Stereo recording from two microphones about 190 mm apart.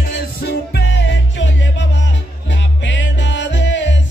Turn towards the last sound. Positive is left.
turn(degrees=75)  # may be behind; listen again after turning